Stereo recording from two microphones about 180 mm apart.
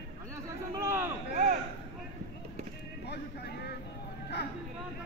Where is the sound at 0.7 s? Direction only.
15° right (ahead or behind).